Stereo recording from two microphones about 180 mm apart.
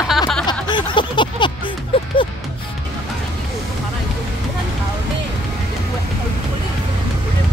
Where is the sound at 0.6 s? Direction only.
25° left (ahead or behind).